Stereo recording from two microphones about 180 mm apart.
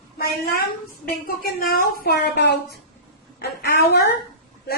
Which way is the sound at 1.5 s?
55° left (ahead or behind).